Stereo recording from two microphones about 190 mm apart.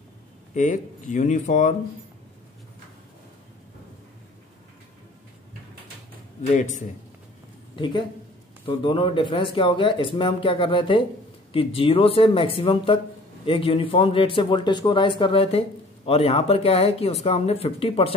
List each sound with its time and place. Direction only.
0.6 s speech: 40° left (ahead or behind)
7.7 s speech: 25° left (ahead or behind)